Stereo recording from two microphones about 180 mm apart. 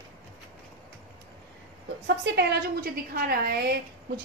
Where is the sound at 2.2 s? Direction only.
70° right (ahead or behind).